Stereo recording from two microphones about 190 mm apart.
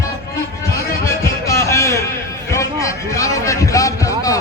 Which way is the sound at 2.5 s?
15° left (ahead or behind).